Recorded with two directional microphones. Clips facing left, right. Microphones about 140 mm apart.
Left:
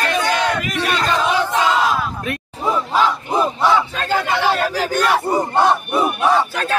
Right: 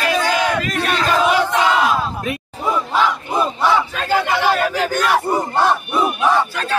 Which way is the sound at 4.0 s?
10° right (ahead or behind).